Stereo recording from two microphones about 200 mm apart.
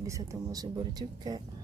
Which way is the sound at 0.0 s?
15° right (ahead or behind).